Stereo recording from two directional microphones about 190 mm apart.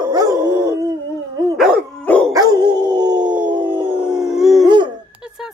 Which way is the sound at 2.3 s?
20° right (ahead or behind).